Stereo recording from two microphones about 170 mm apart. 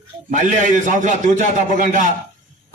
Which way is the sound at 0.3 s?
45° right (ahead or behind).